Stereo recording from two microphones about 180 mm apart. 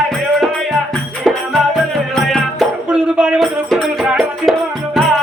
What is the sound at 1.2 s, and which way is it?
Music, centre (ahead or behind).